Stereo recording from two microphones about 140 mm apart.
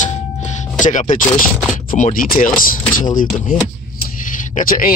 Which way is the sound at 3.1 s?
70° left (ahead or behind).